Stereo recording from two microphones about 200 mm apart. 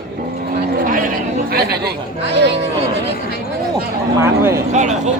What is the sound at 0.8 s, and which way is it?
Chatter, 45° right (ahead or behind).